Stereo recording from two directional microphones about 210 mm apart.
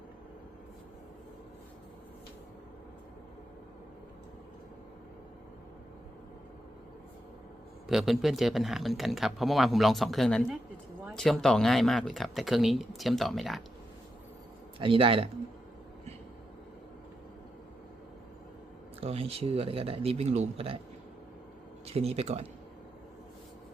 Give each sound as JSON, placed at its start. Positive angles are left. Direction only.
{"t": 7.9, "sound": "speech", "side_deg": 0}
{"t": 14.8, "sound": "speech", "side_deg": -25}
{"t": 18.9, "sound": "speech", "side_deg": -30}
{"t": 21.8, "sound": "speech", "side_deg": -30}